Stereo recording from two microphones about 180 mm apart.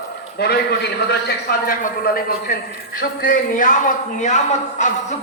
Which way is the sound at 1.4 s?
50° left (ahead or behind).